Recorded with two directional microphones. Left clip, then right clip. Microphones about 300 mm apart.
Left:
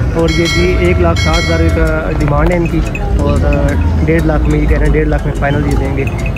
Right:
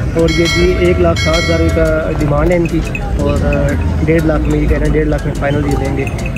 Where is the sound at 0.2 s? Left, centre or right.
Centre.